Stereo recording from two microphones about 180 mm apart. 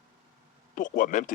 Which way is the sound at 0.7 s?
45° left (ahead or behind).